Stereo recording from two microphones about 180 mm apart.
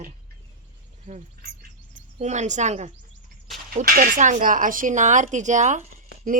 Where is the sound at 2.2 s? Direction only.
40° right (ahead or behind).